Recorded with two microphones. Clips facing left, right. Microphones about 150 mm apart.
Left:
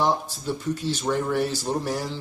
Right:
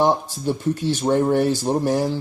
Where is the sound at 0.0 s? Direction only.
55° right (ahead or behind).